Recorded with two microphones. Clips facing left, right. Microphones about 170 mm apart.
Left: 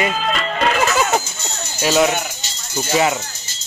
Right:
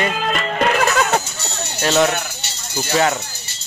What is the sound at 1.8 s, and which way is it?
Speech, 5° left (ahead or behind).